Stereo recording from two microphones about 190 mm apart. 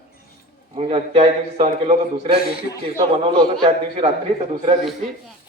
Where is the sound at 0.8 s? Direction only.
35° right (ahead or behind).